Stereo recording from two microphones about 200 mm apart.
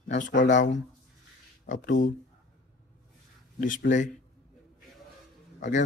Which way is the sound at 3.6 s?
40° left (ahead or behind).